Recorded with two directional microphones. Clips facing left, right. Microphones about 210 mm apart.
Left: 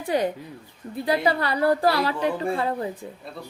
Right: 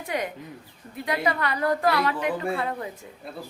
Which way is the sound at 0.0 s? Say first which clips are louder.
Left 6 dB; 30° left (ahead or behind).